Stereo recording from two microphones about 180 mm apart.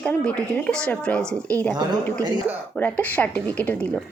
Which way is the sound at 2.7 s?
10° left (ahead or behind).